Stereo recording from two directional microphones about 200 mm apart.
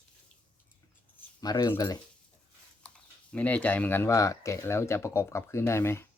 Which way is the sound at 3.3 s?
10° left (ahead or behind).